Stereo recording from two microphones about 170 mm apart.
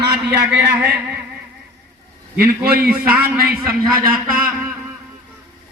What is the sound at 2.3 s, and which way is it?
Speech, 65° right (ahead or behind).